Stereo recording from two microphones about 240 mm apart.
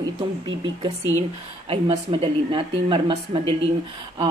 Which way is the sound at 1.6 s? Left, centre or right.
Right.